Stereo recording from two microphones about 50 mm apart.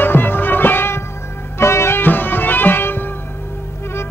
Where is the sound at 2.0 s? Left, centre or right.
Left.